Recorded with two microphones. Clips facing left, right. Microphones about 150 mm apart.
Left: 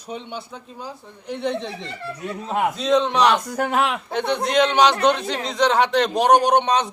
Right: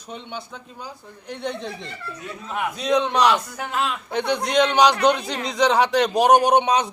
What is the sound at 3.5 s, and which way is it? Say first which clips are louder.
Speech: left 5 dB; 55° left (ahead or behind).